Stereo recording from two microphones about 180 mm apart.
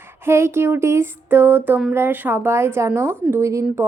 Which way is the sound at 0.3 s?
15° right (ahead or behind).